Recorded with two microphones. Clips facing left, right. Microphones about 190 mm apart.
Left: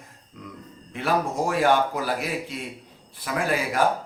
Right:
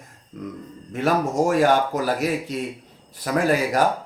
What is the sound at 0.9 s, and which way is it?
A man's voice, 45° right (ahead or behind).